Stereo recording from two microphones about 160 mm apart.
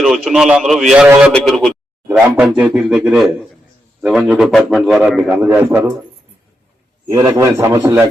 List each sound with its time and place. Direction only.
0.0 s a man's voice: centre (ahead or behind)
1.0 s a man's voice: 15° right (ahead or behind)
1.3 s a man's voice: 5° left (ahead or behind); by 6.0 s 15° right (ahead or behind)
7.1 s a man's voice: 15° right (ahead or behind)